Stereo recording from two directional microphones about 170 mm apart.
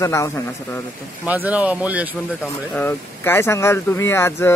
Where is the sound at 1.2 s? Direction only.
10° right (ahead or behind).